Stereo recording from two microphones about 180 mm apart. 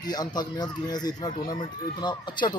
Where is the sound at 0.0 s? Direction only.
20° left (ahead or behind).